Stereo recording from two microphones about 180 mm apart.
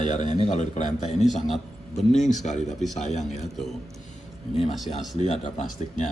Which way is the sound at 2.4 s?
40° left (ahead or behind).